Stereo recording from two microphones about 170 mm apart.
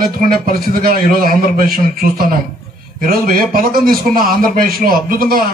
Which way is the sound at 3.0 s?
60° right (ahead or behind).